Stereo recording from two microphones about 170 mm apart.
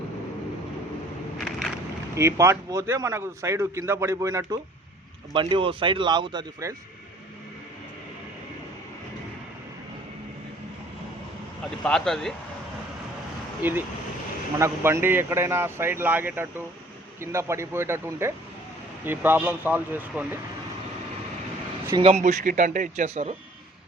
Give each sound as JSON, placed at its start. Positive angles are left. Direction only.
{"t": 1.5, "sound": "vehicle", "side_deg": 0}
{"t": 2.1, "sound": "a man's voice", "side_deg": -15}
{"t": 5.3, "sound": "speech", "side_deg": -30}
{"t": 11.8, "sound": "speech", "side_deg": 5}
{"t": 13.6, "sound": "a man's voice", "side_deg": -10}
{"t": 22.0, "sound": "a man's voice", "side_deg": -45}